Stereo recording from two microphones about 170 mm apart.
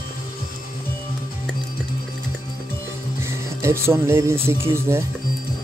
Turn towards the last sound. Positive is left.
turn(degrees=-15)  # may be behind; listen again after turning